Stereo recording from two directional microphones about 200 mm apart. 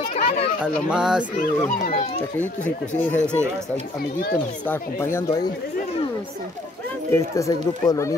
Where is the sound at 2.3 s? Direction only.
10° left (ahead or behind).